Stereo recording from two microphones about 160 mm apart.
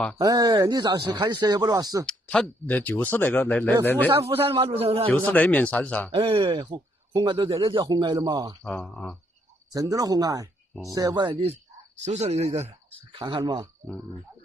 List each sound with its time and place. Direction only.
0.2 s speech: 25° right (ahead or behind)
2.0 s speech: 5° left (ahead or behind)
4.5 s speech: 35° right (ahead or behind)
5.1 s speech: 10° left (ahead or behind)
6.1 s speech: 30° right (ahead or behind)
8.6 s speech: 5° left (ahead or behind)
9.7 s speech: 20° right (ahead or behind)